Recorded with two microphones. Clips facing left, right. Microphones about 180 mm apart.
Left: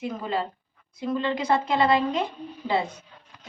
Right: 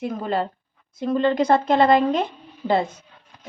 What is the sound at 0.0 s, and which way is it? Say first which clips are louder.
A woman's voice: right 4 dB; 50° right (ahead or behind).